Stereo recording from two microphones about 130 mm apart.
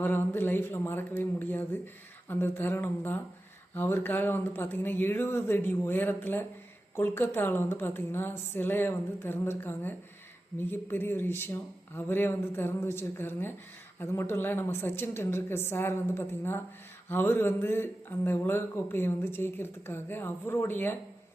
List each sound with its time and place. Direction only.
0.0 s speech: 15° left (ahead or behind)